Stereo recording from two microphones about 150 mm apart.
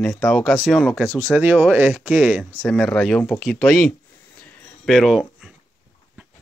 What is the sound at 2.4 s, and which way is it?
Speech, 5° left (ahead or behind).